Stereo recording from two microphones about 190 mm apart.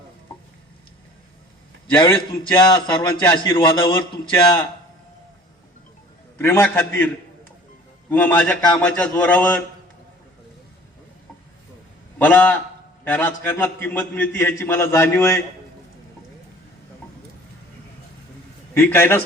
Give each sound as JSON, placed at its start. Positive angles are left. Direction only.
{"t": 1.9, "sound": "a man's voice", "side_deg": 15}
{"t": 6.4, "sound": "a man's voice", "side_deg": 10}
{"t": 8.1, "sound": "a man's voice", "side_deg": 10}
{"t": 12.2, "sound": "a man's voice", "side_deg": 10}
{"t": 18.7, "sound": "a man's voice", "side_deg": 10}